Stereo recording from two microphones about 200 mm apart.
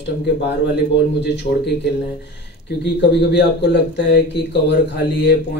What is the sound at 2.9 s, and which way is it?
Speech, 55° left (ahead or behind).